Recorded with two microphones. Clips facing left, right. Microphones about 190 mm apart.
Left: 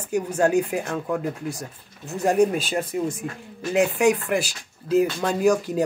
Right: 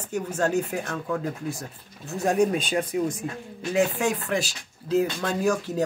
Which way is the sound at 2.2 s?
10° left (ahead or behind).